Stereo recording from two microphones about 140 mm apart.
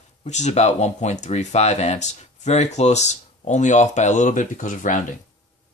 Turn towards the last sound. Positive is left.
turn(degrees=70)  # may be behind; listen again after turning